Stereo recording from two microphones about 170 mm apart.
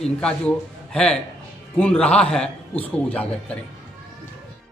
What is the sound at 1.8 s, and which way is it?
A man's voice, 5° left (ahead or behind).